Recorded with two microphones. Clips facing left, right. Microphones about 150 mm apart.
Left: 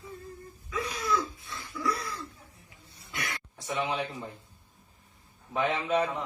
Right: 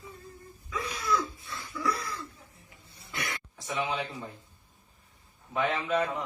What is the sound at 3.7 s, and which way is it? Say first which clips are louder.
Speech: left 1 dB; centre (ahead or behind).